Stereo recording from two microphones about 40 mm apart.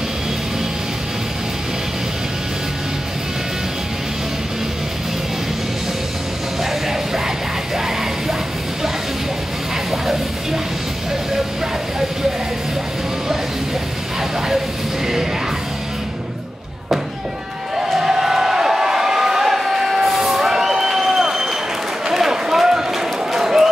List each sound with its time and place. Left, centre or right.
7.7 s music: centre
9.8 s music: centre
17.9 s crowd: centre
22.1 s run: centre